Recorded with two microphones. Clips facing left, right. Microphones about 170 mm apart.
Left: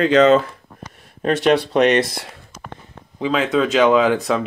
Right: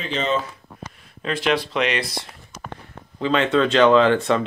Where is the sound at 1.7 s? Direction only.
40° left (ahead or behind).